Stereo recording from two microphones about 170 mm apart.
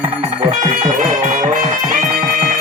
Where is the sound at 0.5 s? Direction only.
50° right (ahead or behind).